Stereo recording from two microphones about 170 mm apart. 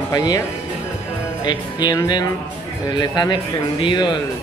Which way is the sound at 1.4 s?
25° left (ahead or behind).